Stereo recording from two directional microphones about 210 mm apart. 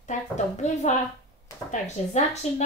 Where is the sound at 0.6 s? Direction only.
35° left (ahead or behind).